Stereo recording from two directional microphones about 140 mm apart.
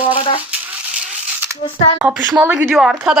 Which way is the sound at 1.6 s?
40° left (ahead or behind).